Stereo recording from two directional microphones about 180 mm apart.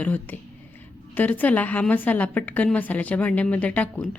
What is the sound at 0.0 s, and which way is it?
A woman's voice, 10° left (ahead or behind).